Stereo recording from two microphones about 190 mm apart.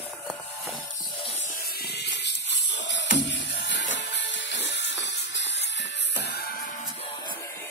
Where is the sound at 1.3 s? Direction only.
40° left (ahead or behind).